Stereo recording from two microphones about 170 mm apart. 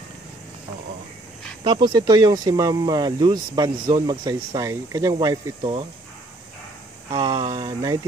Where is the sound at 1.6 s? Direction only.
25° right (ahead or behind).